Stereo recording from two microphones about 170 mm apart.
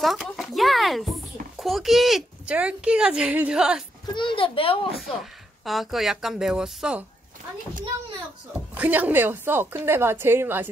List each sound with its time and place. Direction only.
0.0 s a sound: centre (ahead or behind)
1.6 s speech: centre (ahead or behind)
4.1 s a child's voice: 30° left (ahead or behind)
4.9 s speech: centre (ahead or behind)
8.7 s a woman's voice: 10° right (ahead or behind)